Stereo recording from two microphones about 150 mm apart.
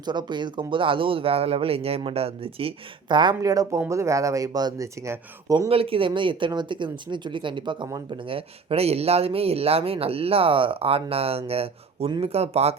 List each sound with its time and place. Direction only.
0.0 s speech: 30° right (ahead or behind)
5.6 s speech: 40° right (ahead or behind); by 8.2 s 25° right (ahead or behind)
8.2 s speech: 35° right (ahead or behind)